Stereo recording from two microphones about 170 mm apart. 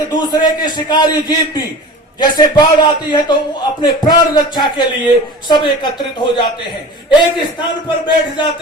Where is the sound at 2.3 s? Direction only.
25° left (ahead or behind).